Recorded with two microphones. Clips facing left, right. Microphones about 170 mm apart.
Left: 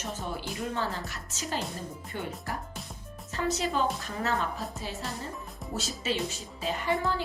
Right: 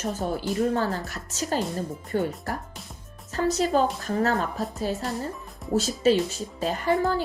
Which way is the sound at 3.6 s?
40° right (ahead or behind).